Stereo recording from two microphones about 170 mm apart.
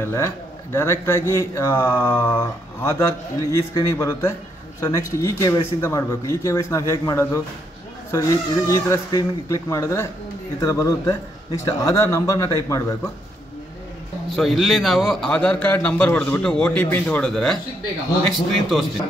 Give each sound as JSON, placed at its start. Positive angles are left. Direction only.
{"t": 0.0, "sound": "speech", "side_deg": 15}
{"t": 14.3, "sound": "a man's voice", "side_deg": 0}